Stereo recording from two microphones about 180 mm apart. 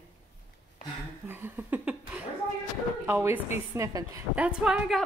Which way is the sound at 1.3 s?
10° right (ahead or behind).